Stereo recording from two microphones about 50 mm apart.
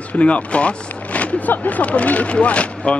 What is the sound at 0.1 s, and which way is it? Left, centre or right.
Speech, left.